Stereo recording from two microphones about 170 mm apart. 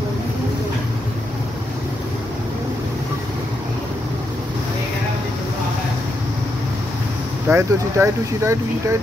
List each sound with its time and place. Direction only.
7.4 s speech: 15° right (ahead or behind)